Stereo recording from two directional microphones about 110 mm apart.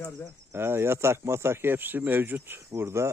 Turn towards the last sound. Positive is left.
turn(degrees=-25)  # may be behind; listen again after turning